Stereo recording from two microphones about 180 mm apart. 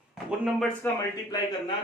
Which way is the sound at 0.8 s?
20° left (ahead or behind).